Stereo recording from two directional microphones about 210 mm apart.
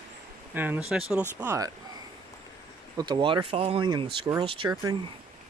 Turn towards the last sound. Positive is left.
turn(degrees=-20)  # may be behind; listen again after turning